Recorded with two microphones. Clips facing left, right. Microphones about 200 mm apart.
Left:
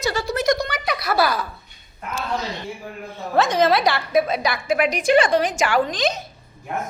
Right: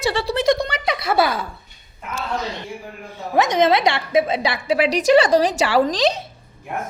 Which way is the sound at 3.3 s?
20° right (ahead or behind).